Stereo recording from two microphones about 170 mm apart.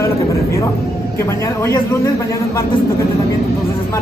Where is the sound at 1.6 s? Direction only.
15° left (ahead or behind).